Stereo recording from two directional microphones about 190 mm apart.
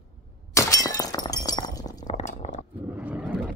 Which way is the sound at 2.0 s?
35° left (ahead or behind).